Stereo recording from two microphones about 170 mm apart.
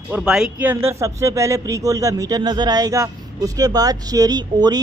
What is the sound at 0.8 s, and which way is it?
A man's voice, 15° right (ahead or behind).